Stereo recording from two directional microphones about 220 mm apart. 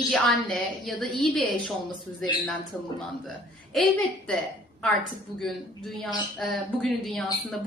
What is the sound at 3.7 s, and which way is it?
Speech, centre (ahead or behind).